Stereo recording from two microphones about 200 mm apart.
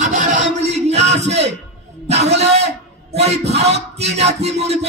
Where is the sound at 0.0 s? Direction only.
35° right (ahead or behind).